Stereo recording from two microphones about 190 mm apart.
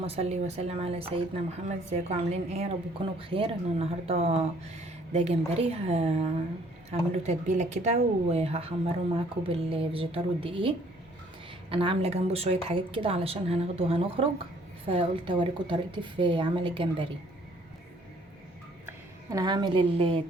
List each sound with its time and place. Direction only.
0.0 s a woman's voice: 30° right (ahead or behind)
18.9 s speech: 15° right (ahead or behind)